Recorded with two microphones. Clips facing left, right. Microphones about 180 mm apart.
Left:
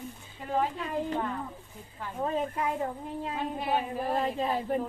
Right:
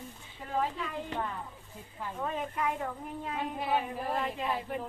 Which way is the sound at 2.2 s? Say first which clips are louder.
Left 4 dB; 30° left (ahead or behind).